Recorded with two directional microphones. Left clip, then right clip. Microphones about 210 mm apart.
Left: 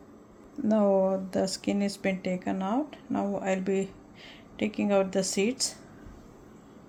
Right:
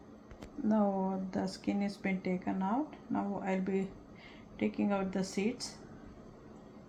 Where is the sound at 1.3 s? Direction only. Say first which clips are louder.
Left 8 dB; 70° left (ahead or behind).